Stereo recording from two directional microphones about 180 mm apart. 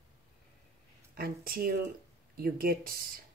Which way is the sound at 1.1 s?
55° right (ahead or behind).